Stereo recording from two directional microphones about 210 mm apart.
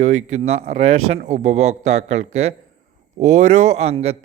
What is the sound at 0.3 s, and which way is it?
A man's voice, 30° right (ahead or behind).